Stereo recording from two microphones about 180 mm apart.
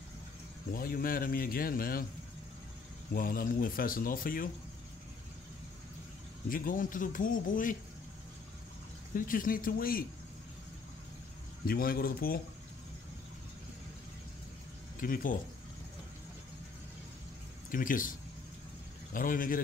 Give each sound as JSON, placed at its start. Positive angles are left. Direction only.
{"t": 0.7, "sound": "speech", "side_deg": 55}
{"t": 3.2, "sound": "speech", "side_deg": 55}
{"t": 6.5, "sound": "speech", "side_deg": 50}
{"t": 9.1, "sound": "speech", "side_deg": 50}
{"t": 11.6, "sound": "speech", "side_deg": 55}
{"t": 15.0, "sound": "speech", "side_deg": 50}
{"t": 17.6, "sound": "speech", "side_deg": 50}
{"t": 19.1, "sound": "speech", "side_deg": 50}